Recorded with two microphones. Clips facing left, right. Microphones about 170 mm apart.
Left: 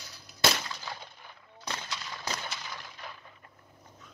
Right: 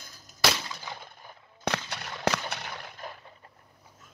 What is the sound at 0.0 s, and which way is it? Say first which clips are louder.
Cap gun: left 1 dB; 45° right (ahead or behind).